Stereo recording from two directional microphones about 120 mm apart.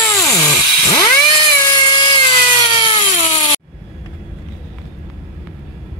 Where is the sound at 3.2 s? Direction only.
55° left (ahead or behind).